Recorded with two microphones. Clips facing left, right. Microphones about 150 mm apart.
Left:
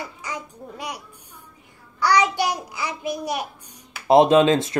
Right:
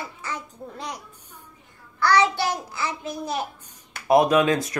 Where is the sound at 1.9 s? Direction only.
15° left (ahead or behind).